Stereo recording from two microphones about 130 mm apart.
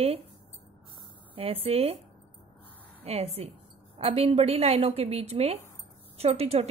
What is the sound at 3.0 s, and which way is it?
A woman's voice, 50° right (ahead or behind).